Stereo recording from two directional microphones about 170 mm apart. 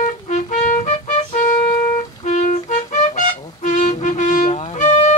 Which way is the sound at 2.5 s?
45° left (ahead or behind).